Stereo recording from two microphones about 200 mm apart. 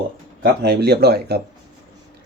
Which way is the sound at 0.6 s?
55° right (ahead or behind).